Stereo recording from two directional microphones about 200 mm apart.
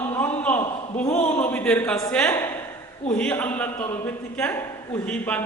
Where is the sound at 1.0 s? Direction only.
35° left (ahead or behind).